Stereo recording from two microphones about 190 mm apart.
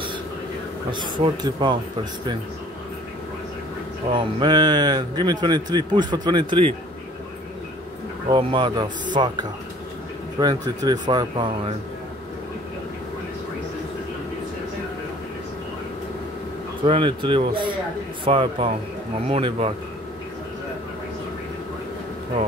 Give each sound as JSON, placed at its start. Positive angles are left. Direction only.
{"t": 0.9, "sound": "speech", "side_deg": -25}
{"t": 4.1, "sound": "speech", "side_deg": -25}
{"t": 8.3, "sound": "speech", "side_deg": -25}
{"t": 16.8, "sound": "speech", "side_deg": -25}